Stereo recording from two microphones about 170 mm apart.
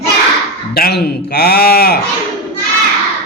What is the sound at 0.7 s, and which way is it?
Speech, 65° left (ahead or behind).